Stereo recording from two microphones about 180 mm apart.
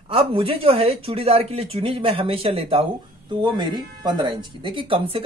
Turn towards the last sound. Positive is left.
turn(degrees=-30)  # may be behind; listen again after turning